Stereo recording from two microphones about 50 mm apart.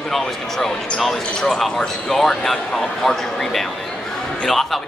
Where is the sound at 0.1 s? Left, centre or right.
Centre.